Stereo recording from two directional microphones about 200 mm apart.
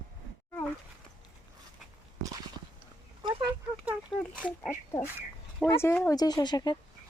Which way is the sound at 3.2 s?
20° right (ahead or behind).